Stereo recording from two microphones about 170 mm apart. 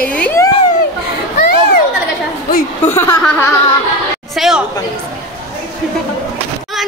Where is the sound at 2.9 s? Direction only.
15° left (ahead or behind).